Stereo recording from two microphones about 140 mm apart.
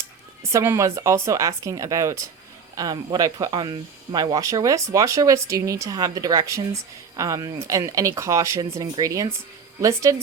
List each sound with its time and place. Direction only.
0.5 s speech: 20° right (ahead or behind)